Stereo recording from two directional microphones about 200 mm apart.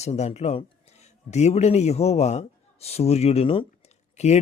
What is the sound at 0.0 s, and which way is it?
A man's voice, 35° left (ahead or behind).